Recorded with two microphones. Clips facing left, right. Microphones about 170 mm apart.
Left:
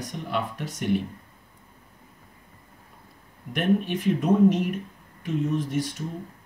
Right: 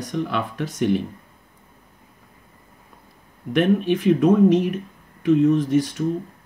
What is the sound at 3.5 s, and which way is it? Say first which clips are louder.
Speech: right 5 dB; 90° right.